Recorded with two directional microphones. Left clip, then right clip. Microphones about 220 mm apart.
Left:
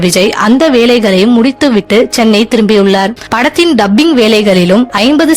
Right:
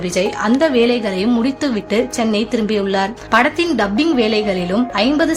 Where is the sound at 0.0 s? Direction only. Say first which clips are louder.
Left 9 dB; 45° left (ahead or behind).